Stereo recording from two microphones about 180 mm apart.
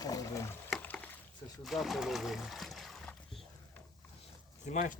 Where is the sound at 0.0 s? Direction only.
20° left (ahead or behind).